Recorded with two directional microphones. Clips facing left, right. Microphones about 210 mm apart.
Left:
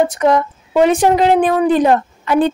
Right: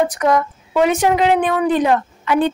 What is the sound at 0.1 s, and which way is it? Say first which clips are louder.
A woman's voice: left 3 dB; 25° left (ahead or behind).